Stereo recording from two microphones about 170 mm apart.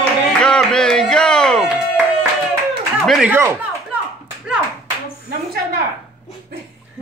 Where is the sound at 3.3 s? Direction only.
15° right (ahead or behind).